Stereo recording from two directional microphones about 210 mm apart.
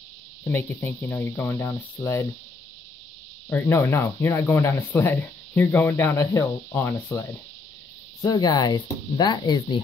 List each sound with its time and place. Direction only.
0.4 s speech: 10° left (ahead or behind)
3.4 s speech: 10° left (ahead or behind)